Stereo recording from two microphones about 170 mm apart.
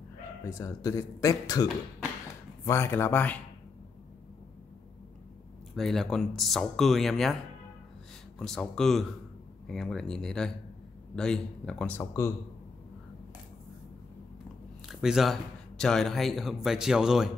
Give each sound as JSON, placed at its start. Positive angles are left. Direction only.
{"t": 0.4, "sound": "speech", "side_deg": 20}
{"t": 5.8, "sound": "speech", "side_deg": 0}
{"t": 8.4, "sound": "speech", "side_deg": 5}
{"t": 14.9, "sound": "speech", "side_deg": 0}